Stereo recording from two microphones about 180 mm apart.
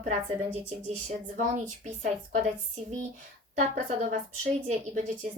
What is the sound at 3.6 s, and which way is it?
A woman's voice, 40° right (ahead or behind).